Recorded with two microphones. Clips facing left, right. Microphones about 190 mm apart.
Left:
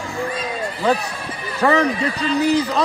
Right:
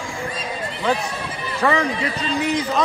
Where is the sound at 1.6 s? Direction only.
35° left (ahead or behind).